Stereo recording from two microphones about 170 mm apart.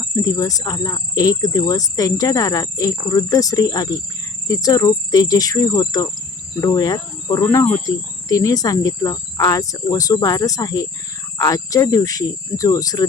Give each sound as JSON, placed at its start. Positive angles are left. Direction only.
{"t": 0.0, "sound": "speech", "side_deg": 20}